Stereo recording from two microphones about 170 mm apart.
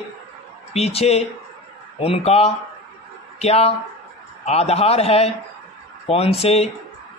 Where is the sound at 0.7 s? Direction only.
35° left (ahead or behind).